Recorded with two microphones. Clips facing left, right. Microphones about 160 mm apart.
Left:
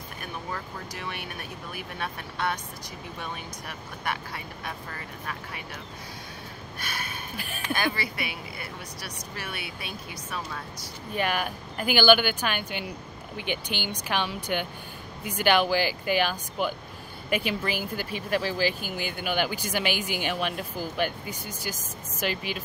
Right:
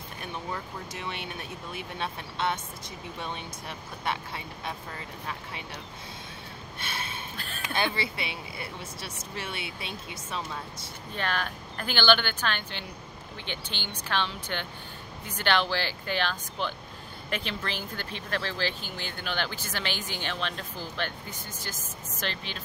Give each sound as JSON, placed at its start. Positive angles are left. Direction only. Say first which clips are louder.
{"t": 0.2, "sound": "speech", "louder": "even", "side_deg": -20}
{"t": 6.8, "sound": "speech", "louder": "even", "side_deg": -25}
{"t": 7.3, "sound": "speech", "louder": "left 3 dB", "side_deg": 10}
{"t": 7.7, "sound": "speech", "louder": "left 1 dB", "side_deg": -25}
{"t": 11.1, "sound": "speech", "louder": "left 4 dB", "side_deg": 10}